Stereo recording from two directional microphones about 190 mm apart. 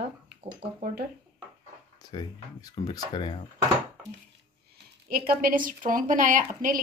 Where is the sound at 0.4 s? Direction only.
30° right (ahead or behind).